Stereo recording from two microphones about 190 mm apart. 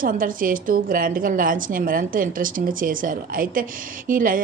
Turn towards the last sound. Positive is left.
turn(degrees=-45)  # may be behind; listen again after turning